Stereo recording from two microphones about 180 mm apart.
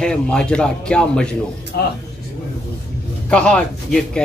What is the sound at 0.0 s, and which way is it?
A man's voice, 5° left (ahead or behind).